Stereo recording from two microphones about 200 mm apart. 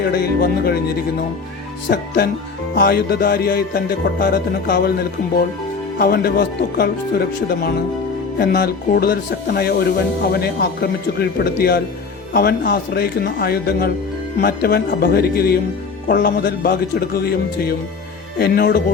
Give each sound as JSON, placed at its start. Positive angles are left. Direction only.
{"t": 0.0, "sound": "music", "side_deg": 50}
{"t": 8.4, "sound": "music", "side_deg": 50}